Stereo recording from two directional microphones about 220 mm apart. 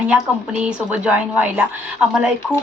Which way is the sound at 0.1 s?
5° right (ahead or behind).